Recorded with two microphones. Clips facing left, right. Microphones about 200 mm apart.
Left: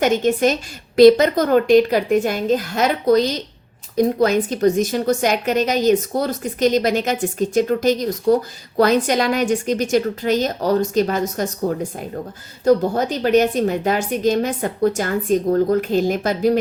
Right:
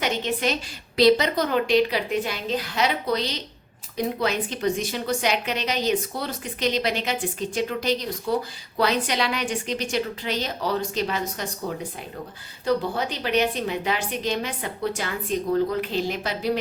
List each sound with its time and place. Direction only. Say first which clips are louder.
0.0 s a woman's voice: left 9 dB; 45° left (ahead or behind)